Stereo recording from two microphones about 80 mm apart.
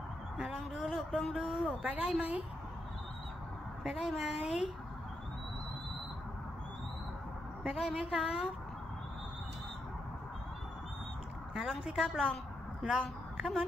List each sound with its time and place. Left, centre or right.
0.4 s a sound: centre
1.3 s speech: centre
1.8 s a woman's voice: centre
3.8 s a woman's voice: centre
7.6 s a woman's voice: centre
11.5 s a woman's voice: centre
13.4 s speech: centre